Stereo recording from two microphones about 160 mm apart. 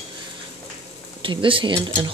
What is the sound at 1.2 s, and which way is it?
Speech, 30° right (ahead or behind).